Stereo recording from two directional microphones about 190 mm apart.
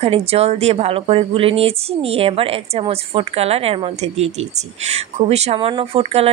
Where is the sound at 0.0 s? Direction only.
30° right (ahead or behind).